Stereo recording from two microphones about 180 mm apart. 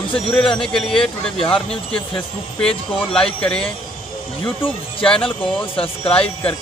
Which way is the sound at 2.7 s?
30° left (ahead or behind).